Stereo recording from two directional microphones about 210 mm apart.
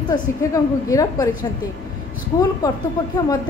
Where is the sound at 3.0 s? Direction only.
15° left (ahead or behind).